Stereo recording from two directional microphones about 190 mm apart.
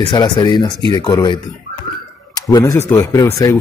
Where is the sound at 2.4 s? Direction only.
20° left (ahead or behind).